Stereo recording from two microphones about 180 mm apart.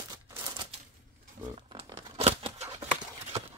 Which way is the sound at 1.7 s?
30° right (ahead or behind).